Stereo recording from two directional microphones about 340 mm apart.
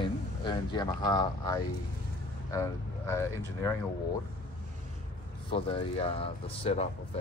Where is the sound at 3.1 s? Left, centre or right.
Centre.